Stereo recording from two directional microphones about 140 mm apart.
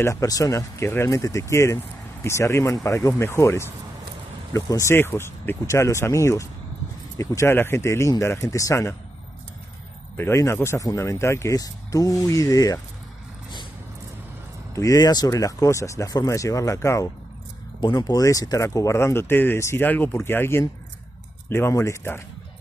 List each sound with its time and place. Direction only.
0.0 s speech: 25° left (ahead or behind)
10.1 s speech: 20° left (ahead or behind)
14.7 s speech: 25° left (ahead or behind)